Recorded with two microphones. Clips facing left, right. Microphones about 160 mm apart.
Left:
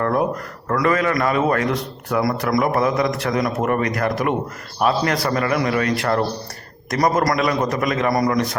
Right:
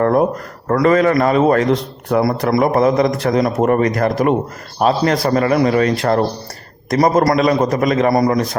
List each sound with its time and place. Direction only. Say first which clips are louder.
0.0 s a man's voice: right 6 dB; 35° right (ahead or behind)